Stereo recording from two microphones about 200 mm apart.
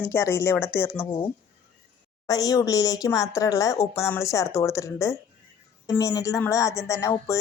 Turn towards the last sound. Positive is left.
turn(degrees=15)  # may be behind; listen again after turning